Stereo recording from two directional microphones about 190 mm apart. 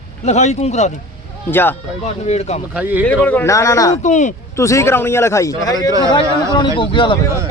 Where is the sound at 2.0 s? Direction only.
35° left (ahead or behind).